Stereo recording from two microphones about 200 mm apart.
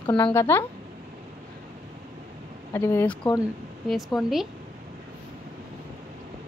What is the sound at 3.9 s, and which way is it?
Speech, centre (ahead or behind).